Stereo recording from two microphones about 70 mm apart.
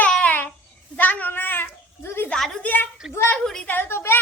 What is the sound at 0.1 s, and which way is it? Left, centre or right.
Babbling, left.